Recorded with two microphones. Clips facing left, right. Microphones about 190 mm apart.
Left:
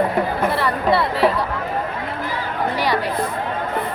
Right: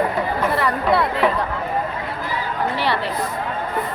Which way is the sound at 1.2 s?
35° left (ahead or behind).